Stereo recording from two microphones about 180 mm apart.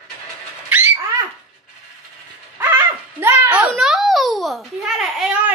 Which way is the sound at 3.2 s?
10° right (ahead or behind).